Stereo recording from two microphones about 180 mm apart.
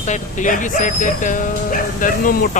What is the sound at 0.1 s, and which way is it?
Speech, 45° left (ahead or behind).